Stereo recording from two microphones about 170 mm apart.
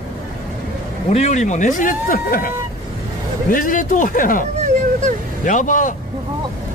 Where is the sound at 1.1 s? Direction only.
40° left (ahead or behind).